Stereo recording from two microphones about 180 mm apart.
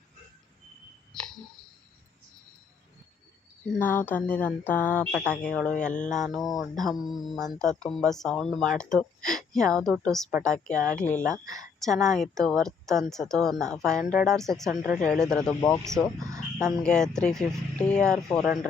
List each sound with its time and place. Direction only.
3.8 s speech: 10° left (ahead or behind)
11.4 s speech: 20° right (ahead or behind)
11.8 s speech: centre (ahead or behind)